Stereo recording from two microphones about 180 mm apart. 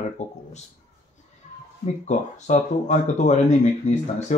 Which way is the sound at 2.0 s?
40° left (ahead or behind).